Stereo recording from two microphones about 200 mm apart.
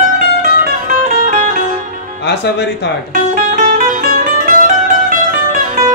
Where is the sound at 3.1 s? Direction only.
40° right (ahead or behind).